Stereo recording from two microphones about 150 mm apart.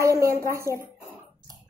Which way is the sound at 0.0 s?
20° right (ahead or behind).